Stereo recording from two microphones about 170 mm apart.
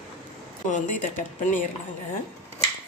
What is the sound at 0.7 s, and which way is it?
Speech, 50° left (ahead or behind).